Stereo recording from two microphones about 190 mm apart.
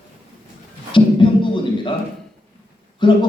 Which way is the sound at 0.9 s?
25° left (ahead or behind).